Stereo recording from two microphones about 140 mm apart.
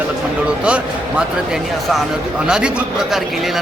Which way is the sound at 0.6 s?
10° right (ahead or behind).